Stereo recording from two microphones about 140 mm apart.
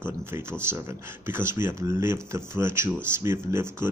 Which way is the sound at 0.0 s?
15° right (ahead or behind).